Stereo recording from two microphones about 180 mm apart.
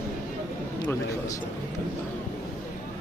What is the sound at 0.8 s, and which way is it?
Speech, 20° left (ahead or behind).